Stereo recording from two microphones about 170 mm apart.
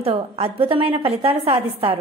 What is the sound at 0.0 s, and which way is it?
A woman's voice, 35° right (ahead or behind).